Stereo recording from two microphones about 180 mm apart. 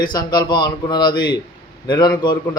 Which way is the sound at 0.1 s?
25° left (ahead or behind).